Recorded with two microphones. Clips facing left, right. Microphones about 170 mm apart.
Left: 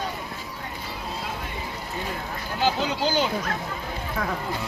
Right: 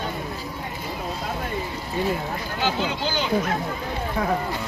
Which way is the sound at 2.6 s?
40° left (ahead or behind).